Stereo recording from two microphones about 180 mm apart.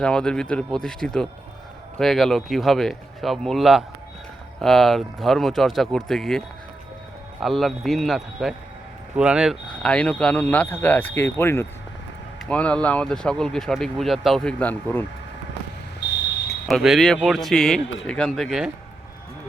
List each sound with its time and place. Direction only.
0.0 s speech: 5° left (ahead or behind)
16.0 s smoke detector: 75° left (ahead or behind)
16.6 s speech: centre (ahead or behind)